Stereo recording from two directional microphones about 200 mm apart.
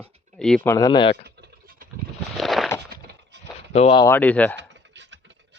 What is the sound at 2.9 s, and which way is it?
Wood, 50° right (ahead or behind).